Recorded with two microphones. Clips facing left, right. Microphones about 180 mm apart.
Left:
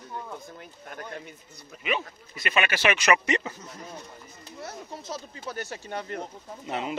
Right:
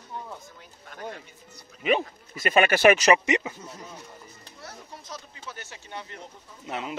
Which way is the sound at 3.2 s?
15° right (ahead or behind).